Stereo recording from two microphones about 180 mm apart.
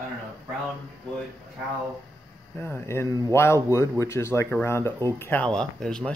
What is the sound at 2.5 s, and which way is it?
Speech, 15° left (ahead or behind).